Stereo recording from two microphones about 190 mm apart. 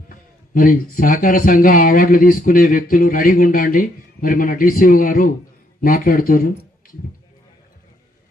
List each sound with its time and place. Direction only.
0.1 s a man's voice: 45° left (ahead or behind)